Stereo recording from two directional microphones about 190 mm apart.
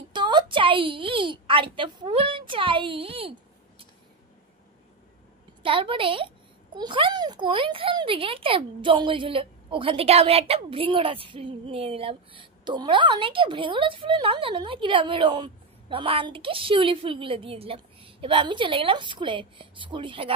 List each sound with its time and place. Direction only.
0.1 s a woman's voice: 25° right (ahead or behind)
5.6 s speech: 25° right (ahead or behind)